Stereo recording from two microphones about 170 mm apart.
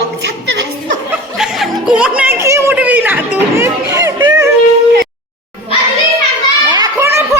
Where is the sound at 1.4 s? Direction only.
5° right (ahead or behind); by 4.5 s 20° right (ahead or behind).